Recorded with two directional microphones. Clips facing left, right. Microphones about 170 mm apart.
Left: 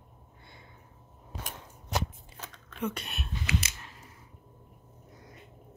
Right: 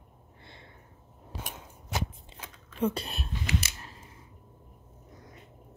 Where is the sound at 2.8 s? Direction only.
30° right (ahead or behind).